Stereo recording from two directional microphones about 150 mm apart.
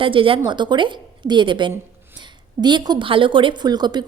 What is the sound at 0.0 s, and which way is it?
A woman's voice, 35° right (ahead or behind).